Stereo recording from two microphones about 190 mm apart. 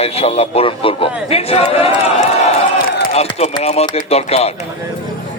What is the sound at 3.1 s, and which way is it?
A man's voice, 30° left (ahead or behind).